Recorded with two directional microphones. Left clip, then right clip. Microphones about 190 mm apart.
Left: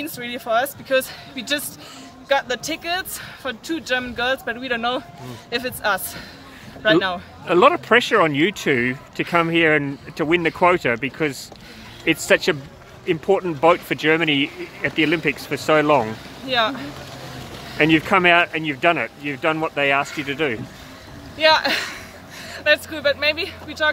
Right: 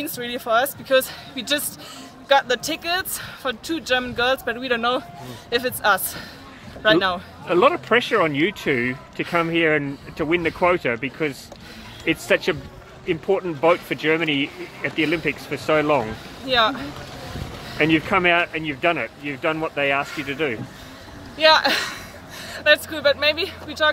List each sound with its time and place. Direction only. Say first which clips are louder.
0.0 s a man's voice: right 1 dB; 10° right (ahead or behind)
7.4 s speech: left 3 dB; 35° left (ahead or behind)
16.4 s speech: right 1 dB; 15° right (ahead or behind)
17.7 s speech: left 2 dB; 35° left (ahead or behind)
21.4 s speech: right 1 dB; 15° right (ahead or behind)